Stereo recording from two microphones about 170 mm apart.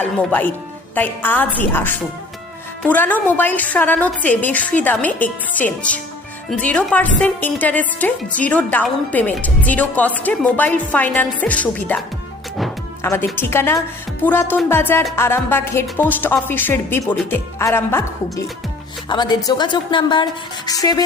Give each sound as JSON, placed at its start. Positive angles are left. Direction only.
{"t": 0.0, "sound": "a woman's voice", "side_deg": 10}
{"t": 13.0, "sound": "a woman's voice", "side_deg": 15}
{"t": 19.0, "sound": "a woman's voice", "side_deg": 25}